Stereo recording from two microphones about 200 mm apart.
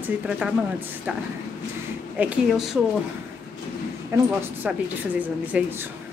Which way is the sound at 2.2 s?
10° right (ahead or behind).